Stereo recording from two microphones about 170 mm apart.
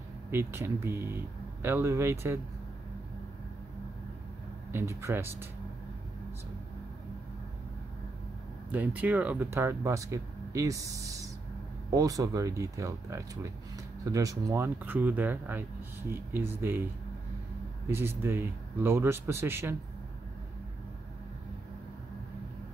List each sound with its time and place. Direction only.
0.3 s speech: 15° right (ahead or behind)
4.7 s speech: 15° right (ahead or behind)
8.7 s speech: 10° right (ahead or behind)
17.8 s speech: 15° right (ahead or behind)